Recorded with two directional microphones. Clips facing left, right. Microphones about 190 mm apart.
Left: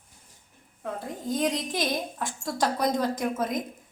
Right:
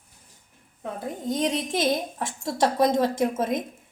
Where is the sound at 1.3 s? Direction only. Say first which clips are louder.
Right 1 dB; 25° right (ahead or behind).